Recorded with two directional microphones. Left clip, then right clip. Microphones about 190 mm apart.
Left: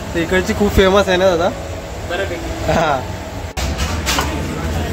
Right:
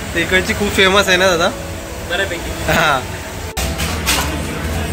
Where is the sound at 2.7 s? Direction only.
10° left (ahead or behind).